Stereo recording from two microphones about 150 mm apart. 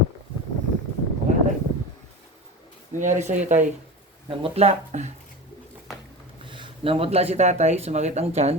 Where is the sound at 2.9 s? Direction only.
55° right (ahead or behind).